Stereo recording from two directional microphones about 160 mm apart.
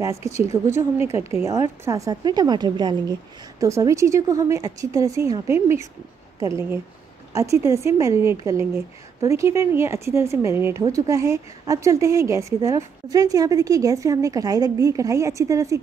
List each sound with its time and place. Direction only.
0.0 s a woman's voice: 20° right (ahead or behind)